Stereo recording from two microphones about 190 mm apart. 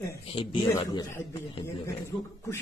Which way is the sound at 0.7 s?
15° left (ahead or behind).